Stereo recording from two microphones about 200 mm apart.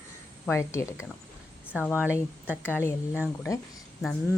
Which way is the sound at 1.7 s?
5° right (ahead or behind).